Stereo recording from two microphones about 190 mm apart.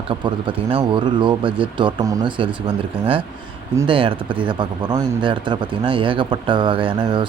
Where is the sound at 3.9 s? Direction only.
25° right (ahead or behind).